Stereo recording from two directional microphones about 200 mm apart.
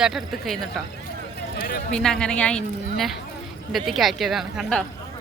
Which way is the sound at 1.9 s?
5° left (ahead or behind).